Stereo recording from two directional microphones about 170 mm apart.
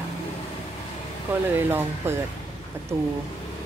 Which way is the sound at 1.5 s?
15° right (ahead or behind).